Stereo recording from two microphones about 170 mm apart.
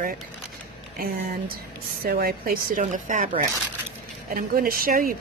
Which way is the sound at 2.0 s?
60° right (ahead or behind).